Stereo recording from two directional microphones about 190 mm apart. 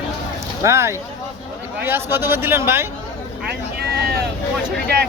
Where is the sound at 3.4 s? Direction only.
55° right (ahead or behind).